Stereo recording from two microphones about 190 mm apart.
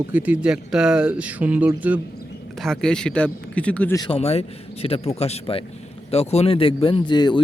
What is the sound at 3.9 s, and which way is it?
A man's voice, 20° left (ahead or behind).